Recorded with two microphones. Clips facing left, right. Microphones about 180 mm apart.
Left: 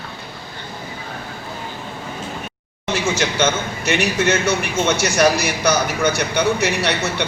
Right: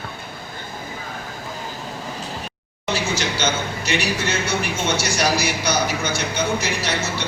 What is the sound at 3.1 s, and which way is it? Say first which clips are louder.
A man's voice: left 4 dB; 55° left (ahead or behind).